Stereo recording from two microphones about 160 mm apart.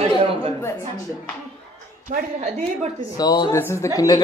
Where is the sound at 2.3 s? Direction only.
45° right (ahead or behind).